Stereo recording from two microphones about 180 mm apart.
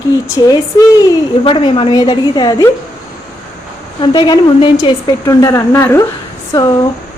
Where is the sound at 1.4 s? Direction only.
30° left (ahead or behind).